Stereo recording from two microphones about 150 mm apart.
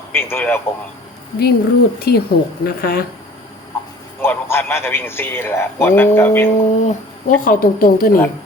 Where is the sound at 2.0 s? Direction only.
90° left.